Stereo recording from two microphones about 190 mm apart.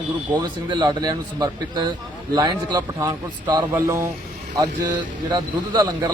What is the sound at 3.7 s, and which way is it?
A man's voice, 15° right (ahead or behind).